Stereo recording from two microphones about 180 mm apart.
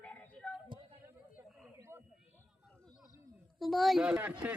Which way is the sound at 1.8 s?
15° right (ahead or behind).